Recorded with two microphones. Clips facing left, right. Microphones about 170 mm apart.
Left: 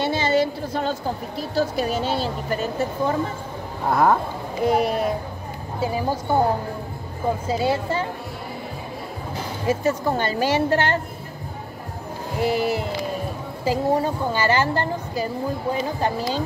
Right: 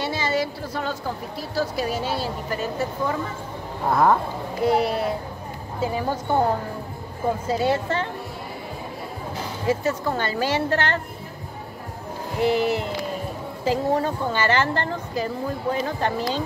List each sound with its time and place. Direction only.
0.0 s a woman's voice: 25° left (ahead or behind)
3.9 s a woman's voice: 5° left (ahead or behind)
4.6 s a woman's voice: 15° left (ahead or behind)
7.4 s a woman's voice: centre (ahead or behind)
9.7 s a woman's voice: 15° left (ahead or behind)
12.4 s a woman's voice: 10° left (ahead or behind)
13.7 s a woman's voice: 10° left (ahead or behind)